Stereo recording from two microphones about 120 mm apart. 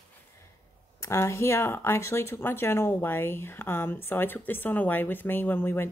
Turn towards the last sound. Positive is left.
turn(degrees=20)  # may be behind; listen again after turning